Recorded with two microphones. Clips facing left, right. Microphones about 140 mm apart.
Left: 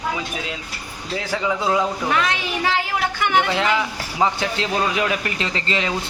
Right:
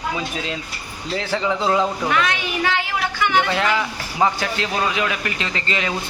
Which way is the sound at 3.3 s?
20° left (ahead or behind).